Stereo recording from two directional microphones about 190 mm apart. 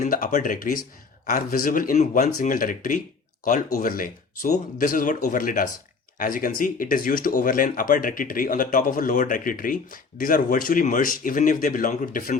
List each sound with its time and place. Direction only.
0.0 s speech: 45° left (ahead or behind)